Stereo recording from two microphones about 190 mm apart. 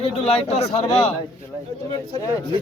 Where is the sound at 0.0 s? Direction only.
35° left (ahead or behind).